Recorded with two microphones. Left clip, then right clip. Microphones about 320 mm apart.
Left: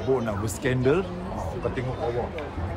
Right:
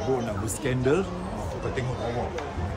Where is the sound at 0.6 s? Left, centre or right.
Left.